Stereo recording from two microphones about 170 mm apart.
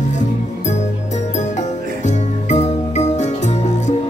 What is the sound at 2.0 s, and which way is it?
Music, 45° left (ahead or behind).